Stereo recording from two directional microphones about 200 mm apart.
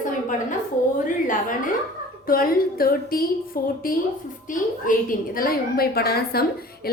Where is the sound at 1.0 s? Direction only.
40° left (ahead or behind).